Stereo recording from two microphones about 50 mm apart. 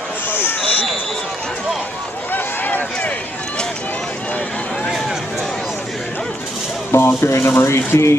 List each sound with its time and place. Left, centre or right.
0.3 s fire alarm: left
2.3 s run: left
6.9 s speech: left